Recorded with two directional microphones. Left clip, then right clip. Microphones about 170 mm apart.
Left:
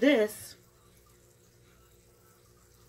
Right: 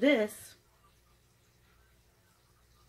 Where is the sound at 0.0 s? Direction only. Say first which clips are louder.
Left 3 dB; 15° right (ahead or behind).